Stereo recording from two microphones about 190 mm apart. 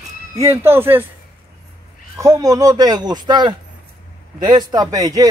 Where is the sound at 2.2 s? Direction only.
15° right (ahead or behind).